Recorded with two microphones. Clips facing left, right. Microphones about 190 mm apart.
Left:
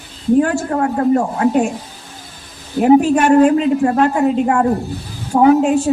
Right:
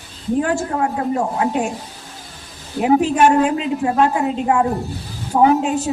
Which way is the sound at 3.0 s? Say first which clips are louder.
Left 4 dB; 50° left (ahead or behind).